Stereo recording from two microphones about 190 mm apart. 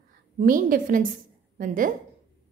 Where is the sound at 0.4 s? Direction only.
45° right (ahead or behind).